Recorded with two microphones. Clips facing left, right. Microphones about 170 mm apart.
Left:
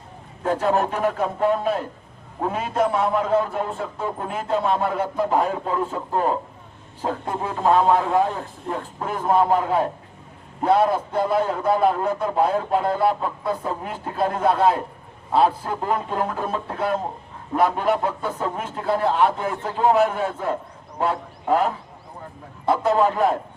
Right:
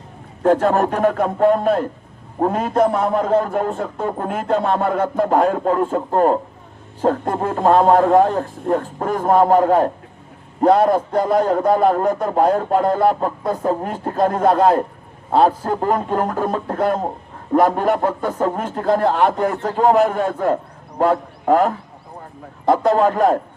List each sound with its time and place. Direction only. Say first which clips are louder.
0.4 s a man's voice: right 6 dB; 55° right (ahead or behind)